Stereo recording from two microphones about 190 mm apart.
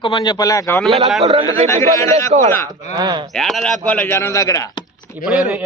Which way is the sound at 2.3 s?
35° right (ahead or behind).